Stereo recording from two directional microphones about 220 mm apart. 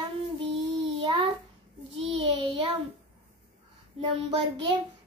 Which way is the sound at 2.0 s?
25° right (ahead or behind).